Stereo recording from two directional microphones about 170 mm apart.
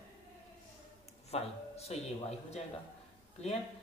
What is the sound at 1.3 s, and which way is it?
Speech, 35° left (ahead or behind).